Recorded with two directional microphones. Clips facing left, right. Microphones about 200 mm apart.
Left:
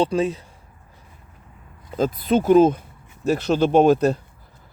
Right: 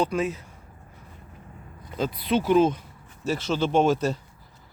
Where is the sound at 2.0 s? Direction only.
45° left (ahead or behind).